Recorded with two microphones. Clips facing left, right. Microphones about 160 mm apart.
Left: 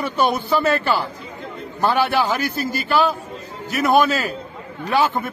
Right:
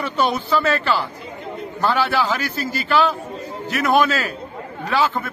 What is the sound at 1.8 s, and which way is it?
Speech, 15° left (ahead or behind).